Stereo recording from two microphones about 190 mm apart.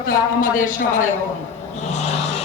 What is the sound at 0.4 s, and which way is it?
Speech, 45° left (ahead or behind).